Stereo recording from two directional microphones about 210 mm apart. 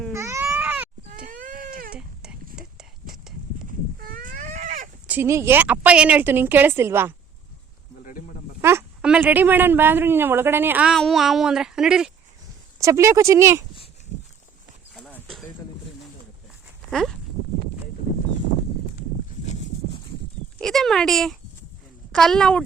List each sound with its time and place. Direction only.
0.1 s baby cry: 15° right (ahead or behind)
1.3 s baby cry: 40° right (ahead or behind)
2.6 s a sound: centre (ahead or behind)
3.7 s livestock: 40° right (ahead or behind)
5.0 s speech: 10° right (ahead or behind)
8.6 s speech: 5° right (ahead or behind)
12.8 s speech: 15° right (ahead or behind)
14.9 s horse: centre (ahead or behind)
16.9 s speech: centre (ahead or behind)
20.6 s speech: centre (ahead or behind)